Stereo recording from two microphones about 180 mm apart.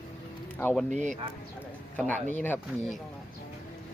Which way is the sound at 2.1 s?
10° left (ahead or behind).